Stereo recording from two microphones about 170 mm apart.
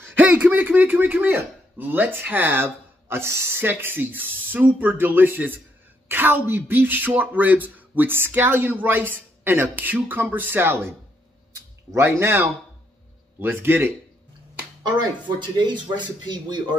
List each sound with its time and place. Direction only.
0.2 s speech: 10° right (ahead or behind)
11.9 s speech: 15° right (ahead or behind)
15.2 s speech: 25° right (ahead or behind)